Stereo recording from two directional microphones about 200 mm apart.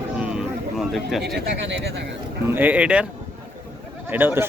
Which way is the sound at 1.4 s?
60° right (ahead or behind).